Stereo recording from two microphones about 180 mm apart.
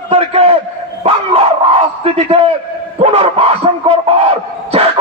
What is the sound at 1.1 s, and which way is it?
Dog, 30° right (ahead or behind).